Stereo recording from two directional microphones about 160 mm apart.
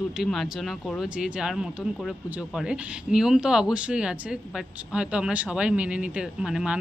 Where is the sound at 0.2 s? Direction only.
Centre (ahead or behind).